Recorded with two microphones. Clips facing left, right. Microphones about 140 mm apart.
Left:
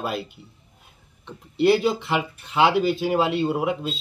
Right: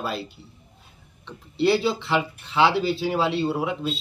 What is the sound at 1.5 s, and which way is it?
Speech, 50° left (ahead or behind).